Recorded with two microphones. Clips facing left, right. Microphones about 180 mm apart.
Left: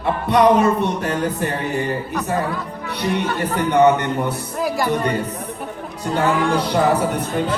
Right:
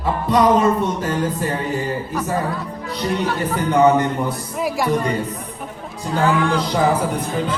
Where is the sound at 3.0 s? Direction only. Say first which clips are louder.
Even; 65° left (ahead or behind).